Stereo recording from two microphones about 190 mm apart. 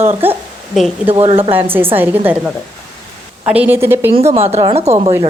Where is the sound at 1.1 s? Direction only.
30° right (ahead or behind).